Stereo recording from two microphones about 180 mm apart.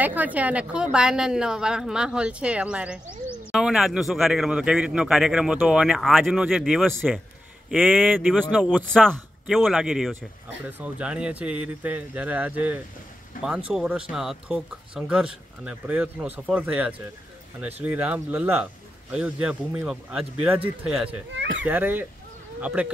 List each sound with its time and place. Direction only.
0.0 s a man's voice: 10° right (ahead or behind)
21.4 s speech: 90° right
21.6 s speech: 10° right (ahead or behind)